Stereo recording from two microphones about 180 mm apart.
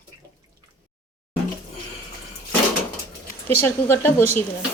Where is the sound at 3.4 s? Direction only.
10° left (ahead or behind).